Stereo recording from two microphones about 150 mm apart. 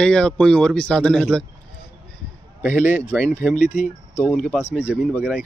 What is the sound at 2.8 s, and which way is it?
Speech, 50° left (ahead or behind).